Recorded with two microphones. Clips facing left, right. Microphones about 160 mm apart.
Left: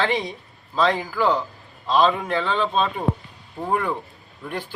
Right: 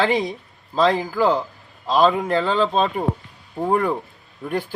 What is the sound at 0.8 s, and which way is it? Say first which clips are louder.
Speech: right 3 dB; 35° right (ahead or behind).